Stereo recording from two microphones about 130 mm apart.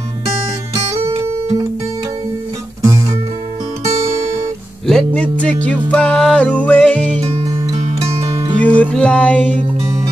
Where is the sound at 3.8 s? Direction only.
55° right (ahead or behind).